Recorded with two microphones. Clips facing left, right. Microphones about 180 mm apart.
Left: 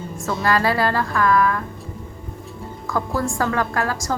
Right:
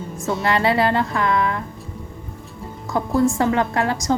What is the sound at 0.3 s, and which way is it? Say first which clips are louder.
A woman's voice: right 1 dB; 20° right (ahead or behind).